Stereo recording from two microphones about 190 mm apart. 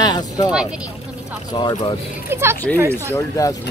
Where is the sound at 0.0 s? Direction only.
20° left (ahead or behind).